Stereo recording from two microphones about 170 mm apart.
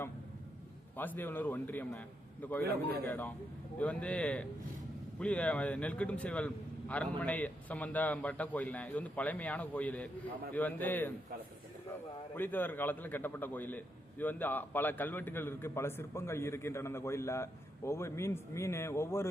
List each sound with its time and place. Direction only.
0.9 s a man's voice: 10° left (ahead or behind)